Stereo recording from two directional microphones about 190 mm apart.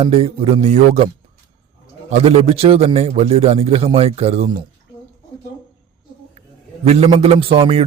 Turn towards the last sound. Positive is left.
turn(degrees=-30)  # may be behind; listen again after turning